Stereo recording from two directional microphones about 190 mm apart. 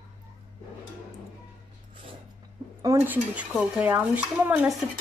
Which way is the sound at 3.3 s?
5° right (ahead or behind).